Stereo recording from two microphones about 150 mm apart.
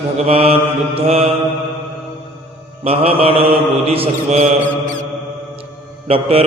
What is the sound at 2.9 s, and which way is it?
Mantra, 40° right (ahead or behind).